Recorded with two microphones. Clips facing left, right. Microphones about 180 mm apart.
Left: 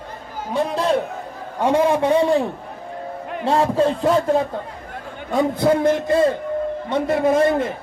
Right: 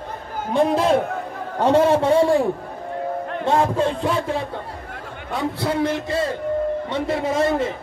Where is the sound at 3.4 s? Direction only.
35° left (ahead or behind).